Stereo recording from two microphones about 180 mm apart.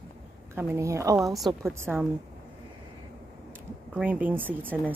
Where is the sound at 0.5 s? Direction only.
15° right (ahead or behind).